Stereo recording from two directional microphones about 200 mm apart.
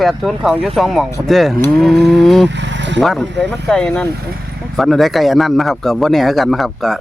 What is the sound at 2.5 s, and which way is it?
Vehicle, 60° right (ahead or behind).